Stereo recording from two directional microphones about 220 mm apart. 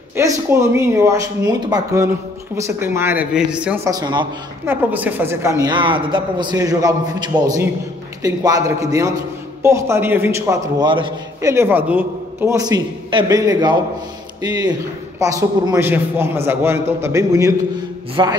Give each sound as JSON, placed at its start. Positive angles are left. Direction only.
{"t": 0.1, "sound": "a man's voice", "side_deg": -10}
{"t": 4.9, "sound": "a man's voice", "side_deg": -10}